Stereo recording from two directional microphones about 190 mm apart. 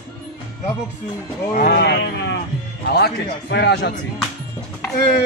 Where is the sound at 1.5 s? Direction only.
55° left (ahead or behind).